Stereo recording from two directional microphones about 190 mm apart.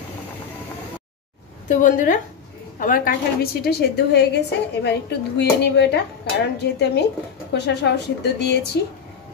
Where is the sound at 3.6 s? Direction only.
60° left (ahead or behind).